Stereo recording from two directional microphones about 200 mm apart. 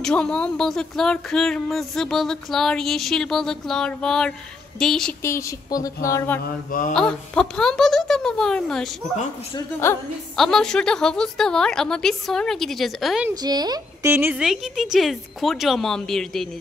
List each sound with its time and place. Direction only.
0.0 s speech: 5° left (ahead or behind)
5.2 s speech: 15° left (ahead or behind)
9.1 s a man's voice: 35° left (ahead or behind)
9.6 s speech: 15° left (ahead or behind)
10.3 s speech: centre (ahead or behind)
13.3 s speech: 20° right (ahead or behind); by 16.4 s centre (ahead or behind)